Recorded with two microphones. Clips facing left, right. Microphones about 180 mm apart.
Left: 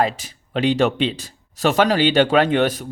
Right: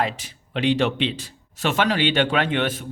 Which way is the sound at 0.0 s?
40° left (ahead or behind).